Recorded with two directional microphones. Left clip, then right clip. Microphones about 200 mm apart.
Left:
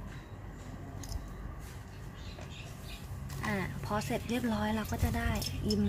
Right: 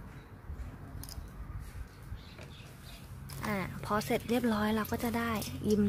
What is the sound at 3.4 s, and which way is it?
Speech, 45° right (ahead or behind).